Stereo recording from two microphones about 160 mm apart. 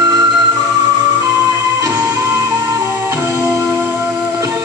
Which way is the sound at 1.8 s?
20° right (ahead or behind).